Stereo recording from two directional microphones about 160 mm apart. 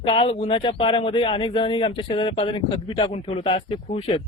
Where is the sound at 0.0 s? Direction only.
35° left (ahead or behind).